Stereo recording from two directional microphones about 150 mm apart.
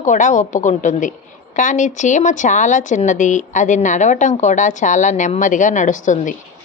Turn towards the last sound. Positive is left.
turn(degrees=55)  # may be behind; listen again after turning